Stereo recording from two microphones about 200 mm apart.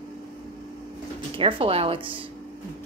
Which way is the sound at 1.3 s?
25° right (ahead or behind).